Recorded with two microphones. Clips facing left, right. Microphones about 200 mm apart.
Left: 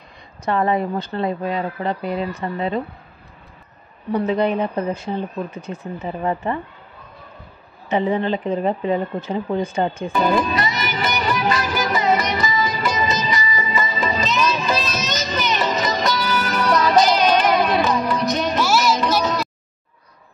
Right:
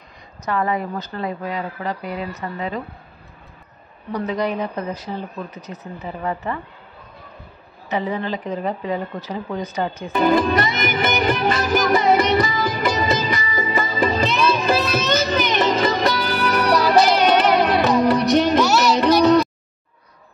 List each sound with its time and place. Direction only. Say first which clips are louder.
0.5 s a woman's voice: left 3 dB; 30° left (ahead or behind)
4.3 s a woman's voice: left 2 dB; 25° left (ahead or behind)
7.9 s a woman's voice: left 4 dB; 25° left (ahead or behind)
10.7 s music: right 3 dB; 55° right (ahead or behind)
18.8 s a sound: right 4 dB; 65° right (ahead or behind)